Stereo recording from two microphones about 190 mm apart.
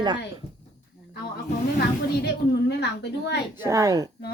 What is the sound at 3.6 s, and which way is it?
Speech, 15° right (ahead or behind).